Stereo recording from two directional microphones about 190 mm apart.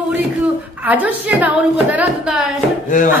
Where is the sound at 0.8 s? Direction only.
10° right (ahead or behind).